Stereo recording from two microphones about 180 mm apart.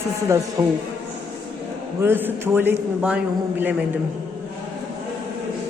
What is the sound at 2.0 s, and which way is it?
A man's voice, 10° right (ahead or behind).